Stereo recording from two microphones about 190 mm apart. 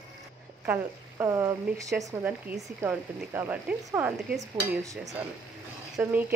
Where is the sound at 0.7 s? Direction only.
15° right (ahead or behind).